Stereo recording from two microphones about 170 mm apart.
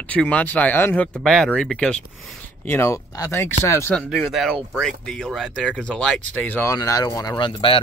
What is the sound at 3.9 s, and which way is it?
Speech, centre (ahead or behind).